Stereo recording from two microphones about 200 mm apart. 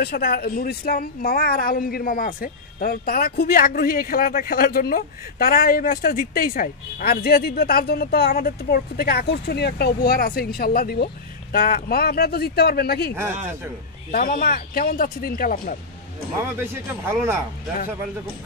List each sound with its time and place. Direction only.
0.0 s speech: 50° left (ahead or behind)
14.1 s speech: 45° left (ahead or behind)
17.0 s speech: 10° right (ahead or behind)